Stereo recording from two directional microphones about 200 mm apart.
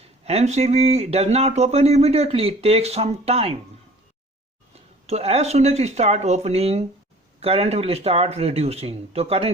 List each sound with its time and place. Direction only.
0.3 s speech: 35° right (ahead or behind)
5.0 s speech: 30° right (ahead or behind)